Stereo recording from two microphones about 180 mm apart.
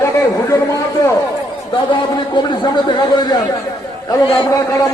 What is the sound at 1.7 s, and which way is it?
A man's voice, 25° left (ahead or behind).